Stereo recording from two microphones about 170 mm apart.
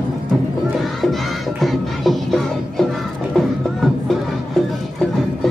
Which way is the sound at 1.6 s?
Centre (ahead or behind).